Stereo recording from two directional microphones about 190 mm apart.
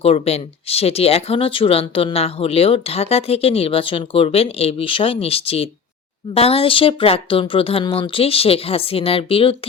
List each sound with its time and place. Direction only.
0.0 s speech: 35° left (ahead or behind)